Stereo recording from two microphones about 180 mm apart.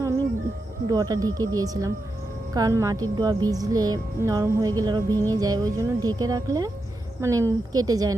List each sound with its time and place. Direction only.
0.9 s speech: 20° right (ahead or behind)